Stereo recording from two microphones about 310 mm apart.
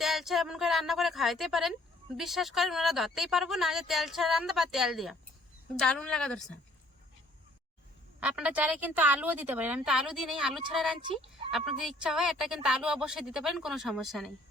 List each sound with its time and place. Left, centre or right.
0.0 s speech: centre
8.2 s speech: centre
11.0 s speech: centre
11.8 s speech: centre